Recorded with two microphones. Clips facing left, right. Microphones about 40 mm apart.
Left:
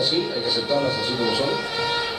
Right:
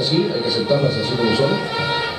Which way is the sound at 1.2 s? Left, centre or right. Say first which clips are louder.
Right 6 dB; centre.